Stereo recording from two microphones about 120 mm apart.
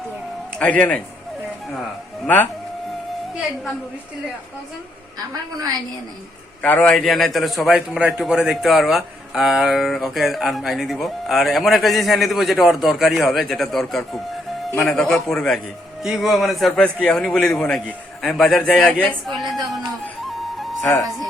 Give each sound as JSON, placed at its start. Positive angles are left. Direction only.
{"t": 0.6, "sound": "a man's voice", "side_deg": 10}
{"t": 2.2, "sound": "a man's voice", "side_deg": 15}
{"t": 5.3, "sound": "a woman's voice", "side_deg": -35}
{"t": 6.6, "sound": "a man's voice", "side_deg": 10}
{"t": 20.2, "sound": "music", "side_deg": 0}
{"t": 21.0, "sound": "a man's voice", "side_deg": 0}